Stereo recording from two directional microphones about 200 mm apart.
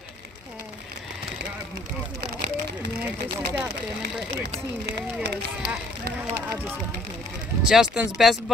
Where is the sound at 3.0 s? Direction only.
10° right (ahead or behind).